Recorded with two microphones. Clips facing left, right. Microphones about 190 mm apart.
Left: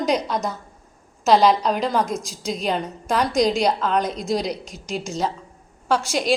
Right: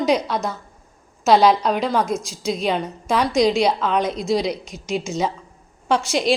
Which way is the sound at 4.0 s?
40° left (ahead or behind).